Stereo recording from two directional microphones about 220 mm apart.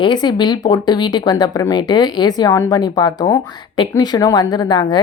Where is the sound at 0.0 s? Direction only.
20° left (ahead or behind).